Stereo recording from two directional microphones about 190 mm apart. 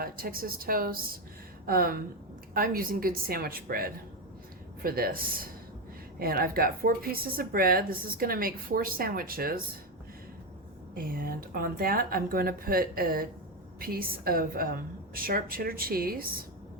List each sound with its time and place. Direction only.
0.0 s a woman's voice: 50° right (ahead or behind)
10.9 s a woman's voice: 50° right (ahead or behind)